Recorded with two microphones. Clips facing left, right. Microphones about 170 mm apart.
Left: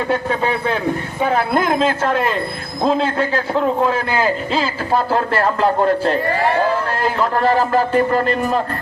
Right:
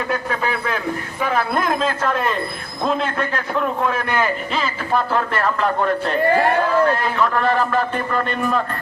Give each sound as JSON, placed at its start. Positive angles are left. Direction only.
{"t": 0.1, "sound": "a man's voice", "side_deg": 30}